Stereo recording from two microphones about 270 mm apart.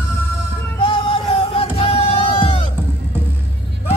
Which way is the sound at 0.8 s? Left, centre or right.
Centre.